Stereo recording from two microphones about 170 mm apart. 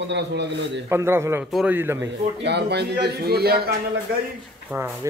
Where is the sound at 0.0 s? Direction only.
90° right.